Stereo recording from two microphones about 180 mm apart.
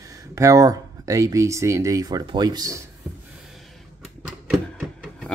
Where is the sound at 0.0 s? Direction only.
15° right (ahead or behind).